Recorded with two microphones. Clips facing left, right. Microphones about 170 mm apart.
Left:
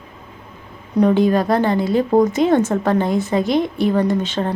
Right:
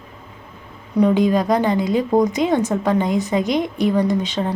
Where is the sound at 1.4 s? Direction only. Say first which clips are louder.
Left 1 dB; 15° right (ahead or behind).